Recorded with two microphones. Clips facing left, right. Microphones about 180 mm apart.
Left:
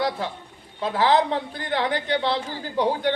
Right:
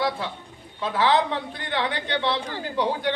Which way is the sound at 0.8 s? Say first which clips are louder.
Left 1 dB; 40° left (ahead or behind).